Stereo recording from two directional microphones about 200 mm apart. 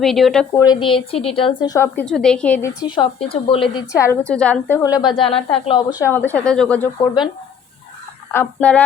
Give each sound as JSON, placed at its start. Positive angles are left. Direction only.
{"t": 0.0, "sound": "a woman's voice", "side_deg": 0}
{"t": 0.6, "sound": "a woman's voice", "side_deg": 20}
{"t": 2.8, "sound": "speech", "side_deg": 25}
{"t": 3.9, "sound": "a woman's voice", "side_deg": 15}
{"t": 4.8, "sound": "a woman's voice", "side_deg": 15}
{"t": 6.1, "sound": "a woman's voice", "side_deg": 10}
{"t": 8.3, "sound": "a woman's voice", "side_deg": 10}